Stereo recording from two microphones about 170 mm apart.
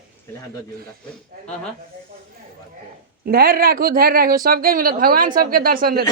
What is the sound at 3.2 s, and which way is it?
Speech, 65° right (ahead or behind).